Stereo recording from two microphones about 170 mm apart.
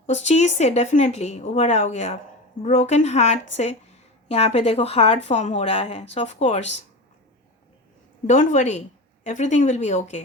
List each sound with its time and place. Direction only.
0.0 s a woman's voice: 45° left (ahead or behind)
8.3 s speech: 50° left (ahead or behind)